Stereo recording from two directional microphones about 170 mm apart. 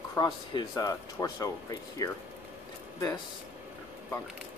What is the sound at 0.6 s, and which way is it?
Speech, 25° left (ahead or behind).